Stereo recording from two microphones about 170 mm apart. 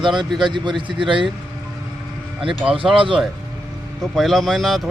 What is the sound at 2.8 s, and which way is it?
Speech, 5° right (ahead or behind).